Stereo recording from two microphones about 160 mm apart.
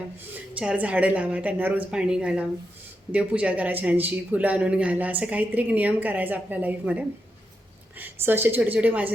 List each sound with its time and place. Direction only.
0.3 s speech: 5° right (ahead or behind)